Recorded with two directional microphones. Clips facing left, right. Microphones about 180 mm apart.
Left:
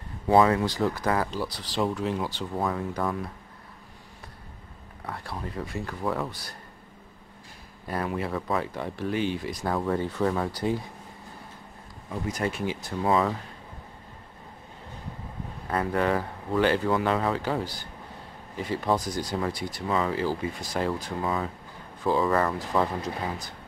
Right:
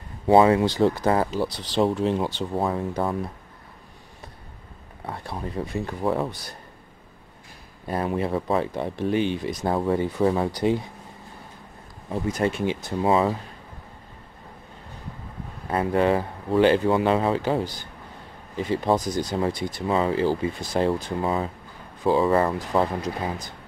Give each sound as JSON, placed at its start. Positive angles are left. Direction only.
{"t": 0.3, "sound": "speech", "side_deg": -25}
{"t": 5.0, "sound": "speech", "side_deg": -20}
{"t": 7.8, "sound": "speech", "side_deg": -25}
{"t": 12.1, "sound": "speech", "side_deg": -25}
{"t": 15.7, "sound": "speech", "side_deg": -20}